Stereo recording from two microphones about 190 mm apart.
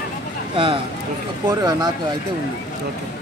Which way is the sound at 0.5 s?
25° right (ahead or behind).